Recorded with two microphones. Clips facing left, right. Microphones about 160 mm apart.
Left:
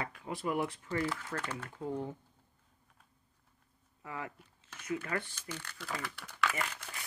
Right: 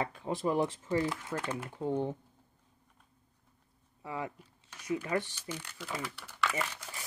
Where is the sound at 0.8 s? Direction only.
20° right (ahead or behind).